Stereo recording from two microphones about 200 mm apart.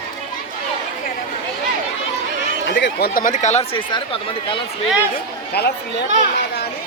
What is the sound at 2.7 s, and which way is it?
Speech, 55° left (ahead or behind).